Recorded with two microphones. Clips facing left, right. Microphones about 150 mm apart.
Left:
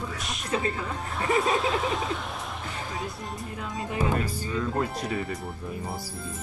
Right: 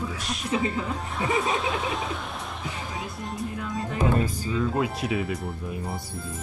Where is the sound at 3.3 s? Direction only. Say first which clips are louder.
Right 3 dB; centre (ahead or behind).